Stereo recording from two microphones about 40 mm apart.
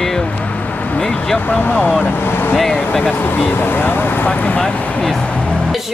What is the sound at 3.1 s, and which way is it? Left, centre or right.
Speech, left.